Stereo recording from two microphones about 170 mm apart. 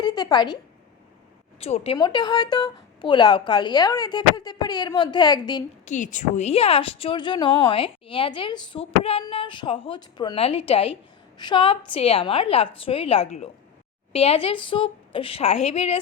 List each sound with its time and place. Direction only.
0.0 s a woman's voice: 25° left (ahead or behind)
1.5 s a woman's voice: 35° left (ahead or behind)
5.8 s a woman's voice: 45° left (ahead or behind)